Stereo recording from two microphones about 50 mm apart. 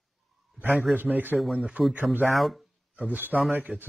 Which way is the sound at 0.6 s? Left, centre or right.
Right.